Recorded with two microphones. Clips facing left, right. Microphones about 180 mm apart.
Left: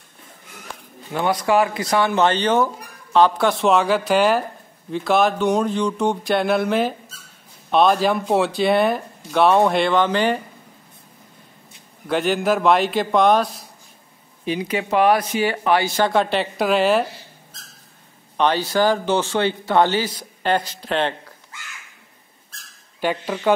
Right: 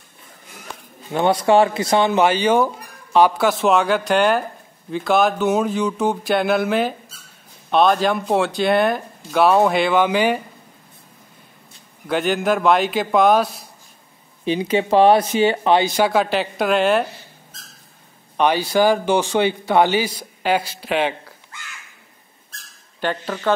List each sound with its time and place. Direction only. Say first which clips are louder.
1.1 s speech: right 3 dB; 25° right (ahead or behind)
2.2 s speech: right 2 dB; 10° right (ahead or behind)
12.1 s speech: even; centre (ahead or behind)
14.4 s speech: right 4 dB; 25° right (ahead or behind)
16.0 s speech: right 1 dB; 5° right (ahead or behind)
18.4 s speech: right 2 dB; 10° right (ahead or behind)
22.9 s speech: left 1 dB; 10° left (ahead or behind)